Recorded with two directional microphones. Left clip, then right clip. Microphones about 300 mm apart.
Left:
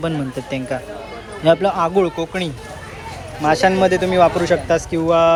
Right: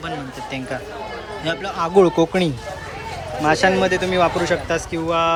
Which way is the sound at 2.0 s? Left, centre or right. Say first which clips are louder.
Right 4 dB; centre.